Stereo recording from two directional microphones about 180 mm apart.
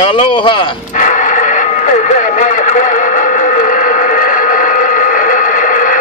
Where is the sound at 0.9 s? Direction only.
45° left (ahead or behind).